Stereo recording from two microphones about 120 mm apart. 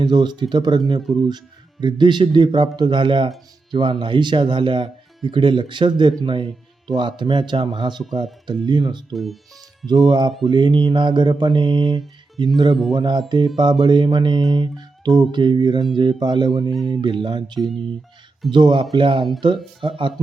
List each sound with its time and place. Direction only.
0.0 s speech: 40° right (ahead or behind)
1.1 s speech: 5° right (ahead or behind)
1.8 s speech: 40° right (ahead or behind)
9.1 s speech: centre (ahead or behind)
10.1 s speech: 40° right (ahead or behind)
17.6 s speech: centre (ahead or behind)
18.5 s speech: 40° right (ahead or behind)